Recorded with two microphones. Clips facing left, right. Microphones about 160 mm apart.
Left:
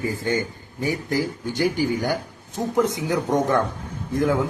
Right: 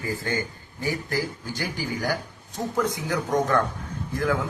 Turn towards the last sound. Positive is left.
turn(degrees=20)  # may be behind; listen again after turning